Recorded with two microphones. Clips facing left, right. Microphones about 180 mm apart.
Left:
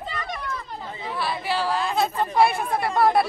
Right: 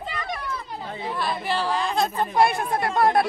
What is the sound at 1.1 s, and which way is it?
Speech, 5° left (ahead or behind).